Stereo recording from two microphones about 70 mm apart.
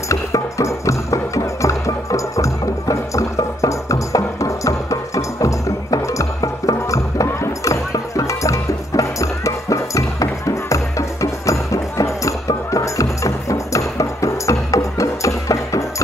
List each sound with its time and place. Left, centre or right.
0.1 s music: left